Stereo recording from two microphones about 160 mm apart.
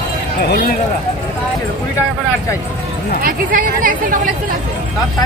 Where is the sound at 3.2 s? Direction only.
60° right (ahead or behind).